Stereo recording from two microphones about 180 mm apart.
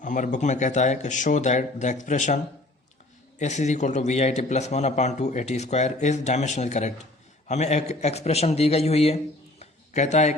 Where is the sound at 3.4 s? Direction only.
40° left (ahead or behind).